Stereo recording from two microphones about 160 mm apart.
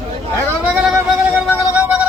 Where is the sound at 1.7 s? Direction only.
10° right (ahead or behind).